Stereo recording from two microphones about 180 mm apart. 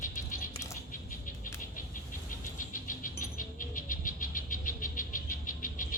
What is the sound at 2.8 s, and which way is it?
Bird, 50° left (ahead or behind).